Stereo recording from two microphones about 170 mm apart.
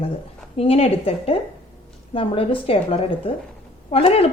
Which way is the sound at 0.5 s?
35° left (ahead or behind).